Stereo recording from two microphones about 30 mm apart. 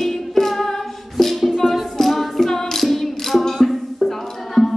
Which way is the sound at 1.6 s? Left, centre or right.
Centre.